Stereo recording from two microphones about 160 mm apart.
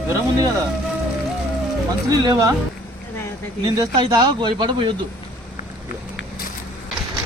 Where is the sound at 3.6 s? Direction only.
25° right (ahead or behind).